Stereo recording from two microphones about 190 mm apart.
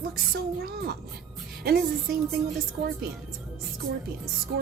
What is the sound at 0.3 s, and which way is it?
A woman's voice, 55° right (ahead or behind).